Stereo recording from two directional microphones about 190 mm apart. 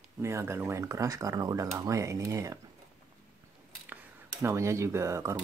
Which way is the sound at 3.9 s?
15° right (ahead or behind).